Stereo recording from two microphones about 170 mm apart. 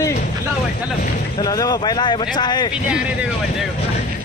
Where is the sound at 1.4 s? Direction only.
25° left (ahead or behind).